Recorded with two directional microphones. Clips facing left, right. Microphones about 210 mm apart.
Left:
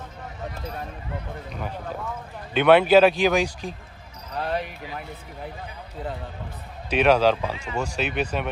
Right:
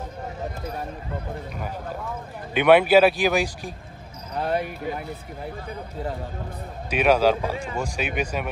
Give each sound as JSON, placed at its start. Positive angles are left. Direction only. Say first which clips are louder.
{"t": 2.5, "sound": "speech", "louder": "even", "side_deg": -10}
{"t": 4.5, "sound": "speech", "louder": "right 5 dB", "side_deg": -50}
{"t": 6.9, "sound": "speech", "louder": "even", "side_deg": -10}